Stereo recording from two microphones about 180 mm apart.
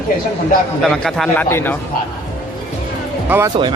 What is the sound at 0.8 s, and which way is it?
Speech, 5° left (ahead or behind).